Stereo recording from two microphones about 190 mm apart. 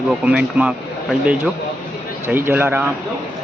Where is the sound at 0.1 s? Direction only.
5° right (ahead or behind).